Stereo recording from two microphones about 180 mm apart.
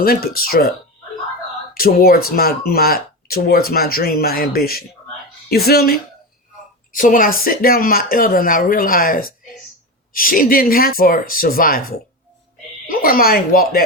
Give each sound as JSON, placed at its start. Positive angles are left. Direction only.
{"t": 0.0, "sound": "speech", "side_deg": 55}
{"t": 1.7, "sound": "speech", "side_deg": 55}
{"t": 6.9, "sound": "speech", "side_deg": 50}